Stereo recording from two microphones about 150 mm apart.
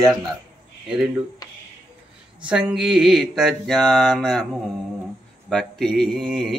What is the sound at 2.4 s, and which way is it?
Mantra, 5° right (ahead or behind).